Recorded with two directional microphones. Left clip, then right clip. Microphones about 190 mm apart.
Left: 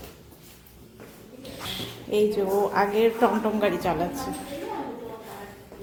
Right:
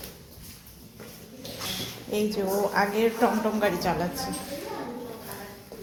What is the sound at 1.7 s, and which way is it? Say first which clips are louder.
A woman's voice: left 4 dB; 10° left (ahead or behind).